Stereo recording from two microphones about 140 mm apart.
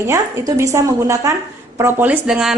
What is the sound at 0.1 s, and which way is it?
A woman's voice, 20° right (ahead or behind).